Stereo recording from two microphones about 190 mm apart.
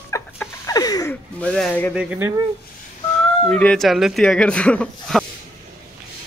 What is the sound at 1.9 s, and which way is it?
Speech, 10° right (ahead or behind).